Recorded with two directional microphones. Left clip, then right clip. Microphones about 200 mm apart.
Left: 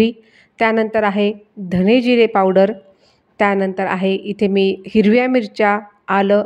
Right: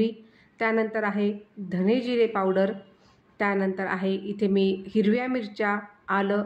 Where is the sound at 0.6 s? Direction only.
40° left (ahead or behind).